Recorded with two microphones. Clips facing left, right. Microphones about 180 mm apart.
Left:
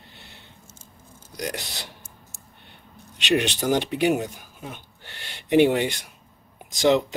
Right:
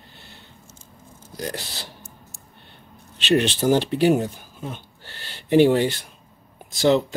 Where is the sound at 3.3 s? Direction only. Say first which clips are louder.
Right 3 dB; 15° left (ahead or behind).